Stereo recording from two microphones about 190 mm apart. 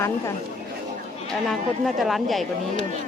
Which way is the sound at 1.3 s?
Centre (ahead or behind).